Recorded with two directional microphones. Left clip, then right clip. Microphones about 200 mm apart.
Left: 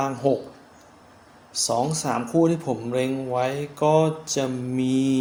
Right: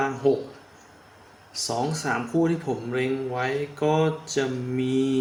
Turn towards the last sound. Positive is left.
turn(degrees=30)  # may be behind; listen again after turning